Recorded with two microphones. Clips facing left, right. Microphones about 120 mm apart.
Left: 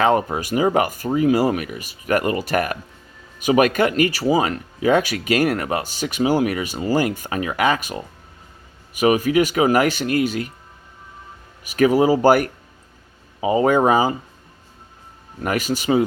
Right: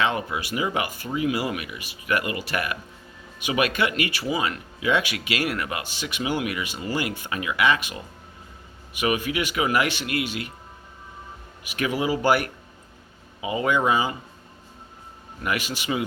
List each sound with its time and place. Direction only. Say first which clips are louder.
0.0 s speech: left 7 dB; 40° left (ahead or behind)
11.6 s speech: left 10 dB; 40° left (ahead or behind)
15.4 s speech: left 7 dB; 40° left (ahead or behind)